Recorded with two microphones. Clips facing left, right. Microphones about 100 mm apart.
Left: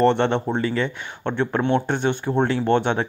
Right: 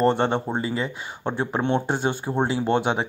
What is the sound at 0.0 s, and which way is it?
Speech, 40° right (ahead or behind).